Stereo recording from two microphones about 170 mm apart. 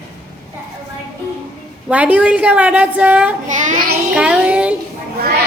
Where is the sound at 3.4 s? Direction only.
45° right (ahead or behind).